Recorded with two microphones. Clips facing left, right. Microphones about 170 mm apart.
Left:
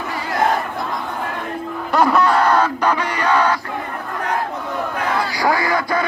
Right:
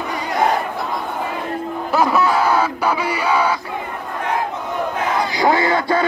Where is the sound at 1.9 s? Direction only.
5° right (ahead or behind).